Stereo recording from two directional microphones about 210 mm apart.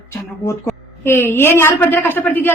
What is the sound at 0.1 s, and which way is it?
A woman's voice, 15° left (ahead or behind).